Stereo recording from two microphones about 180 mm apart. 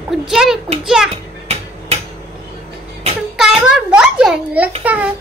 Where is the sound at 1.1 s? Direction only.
35° right (ahead or behind).